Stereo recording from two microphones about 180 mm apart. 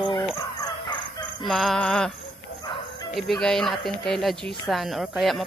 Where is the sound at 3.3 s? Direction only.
Centre (ahead or behind).